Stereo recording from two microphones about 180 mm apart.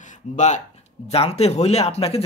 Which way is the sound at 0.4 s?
45° left (ahead or behind).